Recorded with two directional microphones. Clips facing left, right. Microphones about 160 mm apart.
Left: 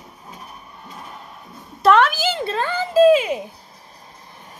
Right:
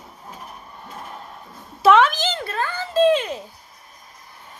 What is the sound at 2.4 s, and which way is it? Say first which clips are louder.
Speech: left 3 dB; 25° left (ahead or behind).